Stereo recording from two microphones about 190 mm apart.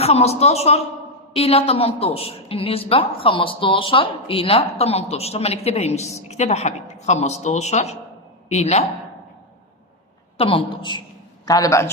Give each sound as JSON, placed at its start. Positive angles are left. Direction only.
{"t": 0.0, "sound": "a woman's voice", "side_deg": 35}
{"t": 10.3, "sound": "a woman's voice", "side_deg": 30}